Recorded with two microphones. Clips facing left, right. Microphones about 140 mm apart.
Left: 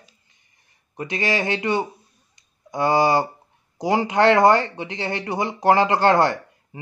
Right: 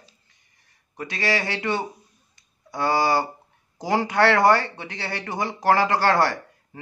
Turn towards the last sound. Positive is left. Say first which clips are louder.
# left 2 dB
turn(degrees=20)  # may be behind; listen again after turning